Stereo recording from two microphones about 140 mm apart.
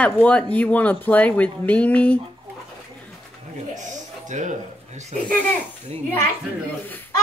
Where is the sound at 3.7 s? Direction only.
60° right (ahead or behind).